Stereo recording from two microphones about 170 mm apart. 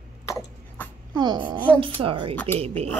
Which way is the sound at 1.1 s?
25° right (ahead or behind).